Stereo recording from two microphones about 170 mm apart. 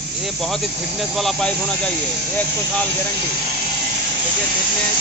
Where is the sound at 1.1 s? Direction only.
Centre (ahead or behind).